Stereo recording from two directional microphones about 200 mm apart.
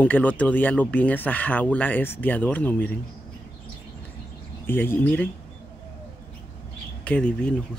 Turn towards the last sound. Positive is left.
turn(degrees=5)  # may be behind; listen again after turning